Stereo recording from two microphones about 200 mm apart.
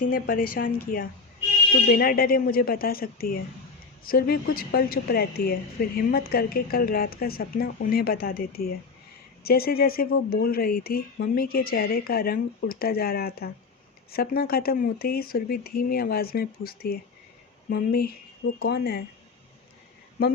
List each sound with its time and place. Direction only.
0.0 s a woman's voice: 45° left (ahead or behind)